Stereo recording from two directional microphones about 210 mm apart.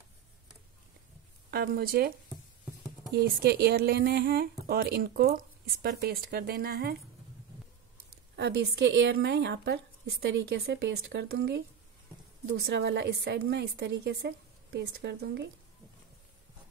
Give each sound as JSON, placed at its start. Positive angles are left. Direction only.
{"t": 1.5, "sound": "speech", "side_deg": -45}
{"t": 3.2, "sound": "speech", "side_deg": -50}
{"t": 8.4, "sound": "a woman's voice", "side_deg": -55}